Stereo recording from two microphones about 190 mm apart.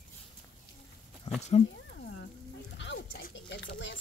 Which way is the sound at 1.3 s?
35° left (ahead or behind).